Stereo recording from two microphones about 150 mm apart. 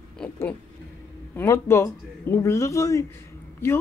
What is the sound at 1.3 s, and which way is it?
Speech, 15° left (ahead or behind).